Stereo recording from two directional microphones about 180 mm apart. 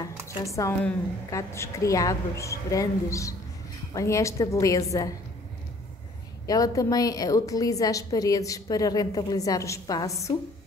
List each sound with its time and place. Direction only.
0.4 s a woman's voice: 15° left (ahead or behind)
6.4 s a woman's voice: 20° left (ahead or behind)